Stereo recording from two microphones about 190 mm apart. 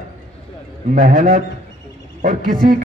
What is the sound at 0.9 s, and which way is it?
A man's voice, 45° right (ahead or behind).